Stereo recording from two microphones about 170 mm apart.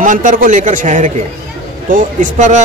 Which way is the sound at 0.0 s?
50° right (ahead or behind).